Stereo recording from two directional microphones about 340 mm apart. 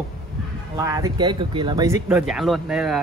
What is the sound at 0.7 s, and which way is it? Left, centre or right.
Speech, centre.